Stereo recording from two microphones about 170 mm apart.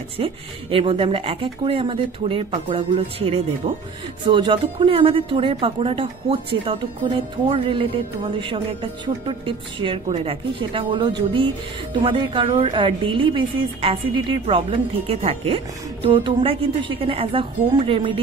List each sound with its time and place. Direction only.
0.2 s a woman's voice: 30° right (ahead or behind)